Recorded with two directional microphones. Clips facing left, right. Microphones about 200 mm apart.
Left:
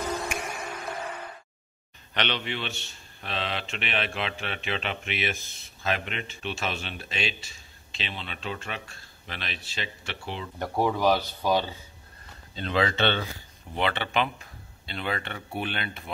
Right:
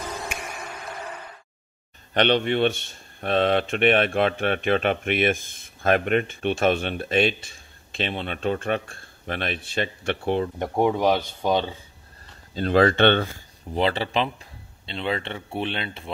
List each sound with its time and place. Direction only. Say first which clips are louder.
2.1 s a man's voice: right 10 dB; 50° right (ahead or behind)
10.6 s speech: even; 20° right (ahead or behind)
12.5 s a man's voice: right 8 dB; 45° right (ahead or behind)
13.7 s speech: right 4 dB; 35° right (ahead or behind)